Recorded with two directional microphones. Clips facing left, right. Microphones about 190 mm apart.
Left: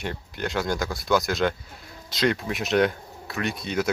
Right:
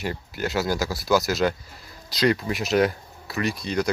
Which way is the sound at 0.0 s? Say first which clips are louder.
Right 2 dB; 5° right (ahead or behind).